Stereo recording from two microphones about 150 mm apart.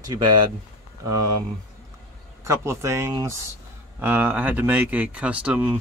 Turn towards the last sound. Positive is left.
turn(degrees=-10)  # may be behind; listen again after turning